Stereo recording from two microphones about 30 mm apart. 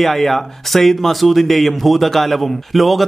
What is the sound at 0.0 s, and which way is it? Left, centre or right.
A man's voice, centre.